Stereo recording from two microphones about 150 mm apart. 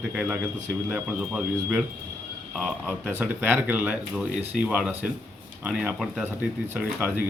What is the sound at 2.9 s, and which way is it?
A man's voice, 15° right (ahead or behind).